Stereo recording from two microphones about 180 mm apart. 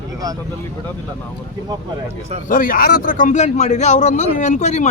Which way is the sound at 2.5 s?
50° left (ahead or behind).